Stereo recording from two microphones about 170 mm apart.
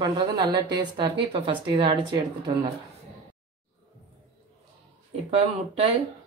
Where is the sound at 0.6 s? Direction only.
25° right (ahead or behind).